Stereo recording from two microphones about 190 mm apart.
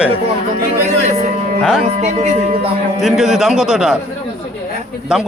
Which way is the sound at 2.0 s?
35° right (ahead or behind).